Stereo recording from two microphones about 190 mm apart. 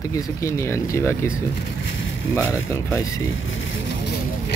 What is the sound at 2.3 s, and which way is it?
Speech, 15° left (ahead or behind).